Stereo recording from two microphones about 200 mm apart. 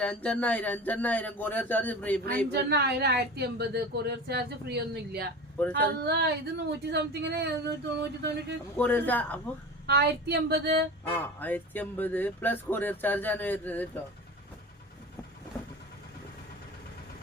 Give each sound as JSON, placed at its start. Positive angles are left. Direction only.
{"t": 0.0, "sound": "speech", "side_deg": 5}
{"t": 2.5, "sound": "a woman's voice", "side_deg": -55}
{"t": 8.8, "sound": "speech", "side_deg": 10}
{"t": 9.8, "sound": "speech", "side_deg": -55}
{"t": 11.1, "sound": "speech", "side_deg": 10}